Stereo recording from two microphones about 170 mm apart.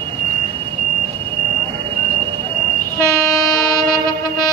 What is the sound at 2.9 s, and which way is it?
Train, 20° left (ahead or behind).